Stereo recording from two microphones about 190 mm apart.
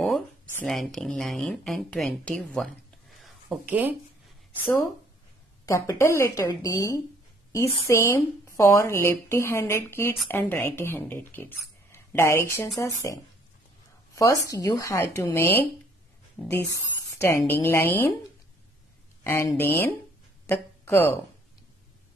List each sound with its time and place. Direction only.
0.6 s a woman's voice: centre (ahead or behind)
3.2 s a sound: centre (ahead or behind)
5.7 s a woman's voice: 15° left (ahead or behind)
16.4 s speech: 5° right (ahead or behind)
17.2 s a woman's voice: 10° left (ahead or behind)
19.2 s a woman's voice: 10° left (ahead or behind)